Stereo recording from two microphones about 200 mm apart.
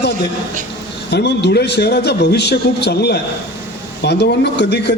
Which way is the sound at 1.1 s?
60° left (ahead or behind).